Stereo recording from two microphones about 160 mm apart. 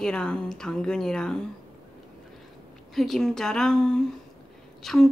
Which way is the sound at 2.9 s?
Centre (ahead or behind).